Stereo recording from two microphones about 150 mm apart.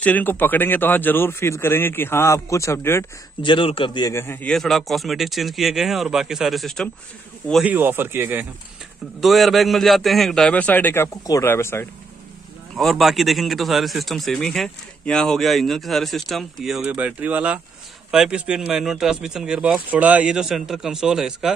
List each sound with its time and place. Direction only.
0.0 s speech: 10° left (ahead or behind)
3.4 s a man's voice: 35° left (ahead or behind)
4.1 s speech: 15° left (ahead or behind)
7.6 s speech: 15° right (ahead or behind)
9.2 s speech: centre (ahead or behind); by 11.9 s 15° left (ahead or behind)
12.7 s speech: centre (ahead or behind)